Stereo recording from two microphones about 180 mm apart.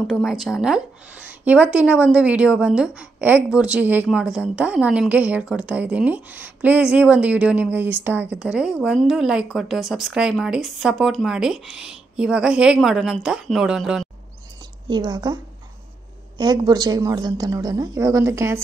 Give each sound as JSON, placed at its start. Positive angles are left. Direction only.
{"t": 0.0, "sound": "a woman's voice", "side_deg": 0}
{"t": 14.9, "sound": "a woman's voice", "side_deg": -20}
{"t": 16.3, "sound": "a woman's voice", "side_deg": -20}